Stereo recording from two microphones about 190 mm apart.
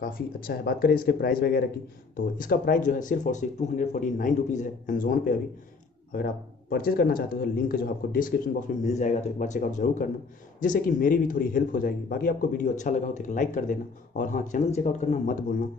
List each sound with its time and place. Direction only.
0.0 s speech: 50° left (ahead or behind)